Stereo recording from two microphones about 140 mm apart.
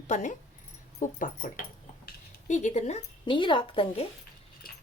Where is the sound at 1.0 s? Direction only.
75° left (ahead or behind).